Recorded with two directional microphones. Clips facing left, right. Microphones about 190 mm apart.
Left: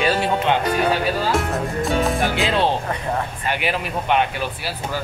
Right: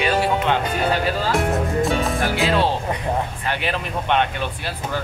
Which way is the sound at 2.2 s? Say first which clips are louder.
Even; 15° left (ahead or behind).